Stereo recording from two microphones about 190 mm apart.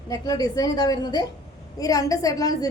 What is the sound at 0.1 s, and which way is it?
A woman's voice, 20° left (ahead or behind).